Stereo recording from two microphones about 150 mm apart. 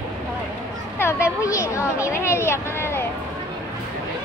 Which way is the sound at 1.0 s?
20° left (ahead or behind).